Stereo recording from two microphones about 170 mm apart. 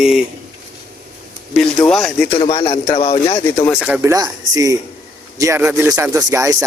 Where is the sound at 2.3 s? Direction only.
30° left (ahead or behind).